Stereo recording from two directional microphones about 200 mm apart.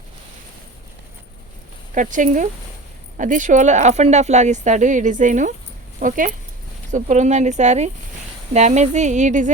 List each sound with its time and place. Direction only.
2.0 s speech: 40° right (ahead or behind)